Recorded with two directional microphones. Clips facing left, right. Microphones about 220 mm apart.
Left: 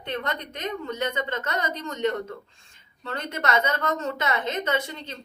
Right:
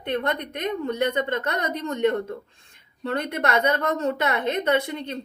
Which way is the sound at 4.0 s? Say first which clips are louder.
Right 4 dB; 60° right (ahead or behind).